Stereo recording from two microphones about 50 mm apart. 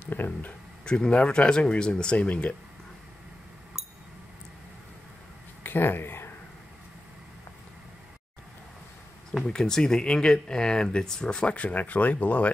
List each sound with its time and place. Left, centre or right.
0.0 s speech: left
0.8 s speech: centre
3.8 s a sound: centre
5.6 s a sound: left
9.4 s speech: centre
11.5 s speech: left